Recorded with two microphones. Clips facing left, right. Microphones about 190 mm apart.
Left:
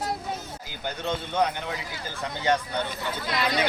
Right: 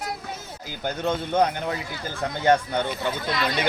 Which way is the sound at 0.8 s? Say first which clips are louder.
Right 4 dB; 45° right (ahead or behind).